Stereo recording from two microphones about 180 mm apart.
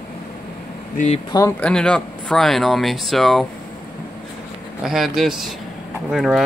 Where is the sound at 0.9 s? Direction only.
40° left (ahead or behind).